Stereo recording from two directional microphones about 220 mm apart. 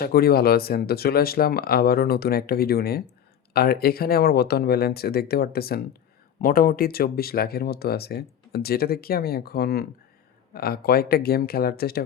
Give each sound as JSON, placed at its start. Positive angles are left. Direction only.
{"t": 0.0, "sound": "speech", "side_deg": 45}